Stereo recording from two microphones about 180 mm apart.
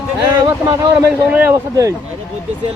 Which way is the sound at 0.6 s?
20° right (ahead or behind).